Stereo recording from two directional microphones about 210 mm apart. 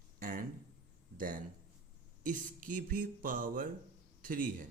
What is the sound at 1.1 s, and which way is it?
A man's voice, 40° right (ahead or behind).